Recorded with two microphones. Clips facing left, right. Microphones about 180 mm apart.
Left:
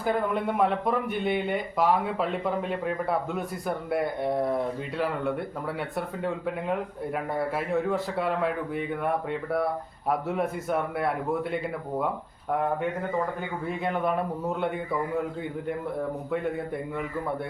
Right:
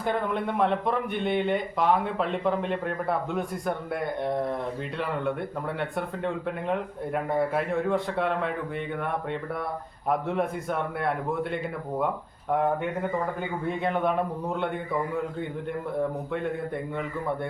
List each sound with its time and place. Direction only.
0.0 s speech: 5° left (ahead or behind)
13.7 s speech: centre (ahead or behind)
16.3 s speech: 5° left (ahead or behind)